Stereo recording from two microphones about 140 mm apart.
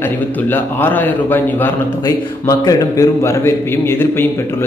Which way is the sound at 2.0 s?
25° left (ahead or behind).